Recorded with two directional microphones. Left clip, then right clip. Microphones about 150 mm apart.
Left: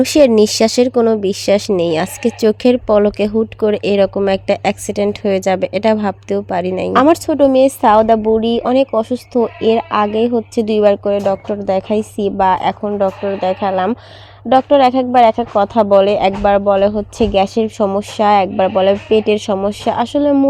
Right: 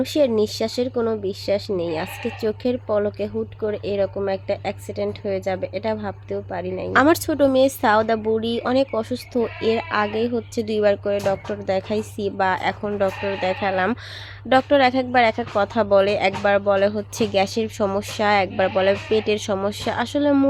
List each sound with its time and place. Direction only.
0.0 s speech: 70° left (ahead or behind); by 6.9 s 90° left
6.9 s speech: 40° left (ahead or behind)
12.8 s speech: 25° left (ahead or behind)